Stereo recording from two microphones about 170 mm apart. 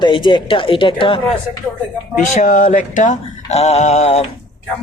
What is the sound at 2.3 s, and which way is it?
Male singing, 50° left (ahead or behind).